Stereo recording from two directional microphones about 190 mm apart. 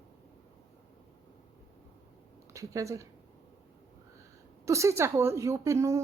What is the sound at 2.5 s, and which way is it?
Speech, 15° right (ahead or behind).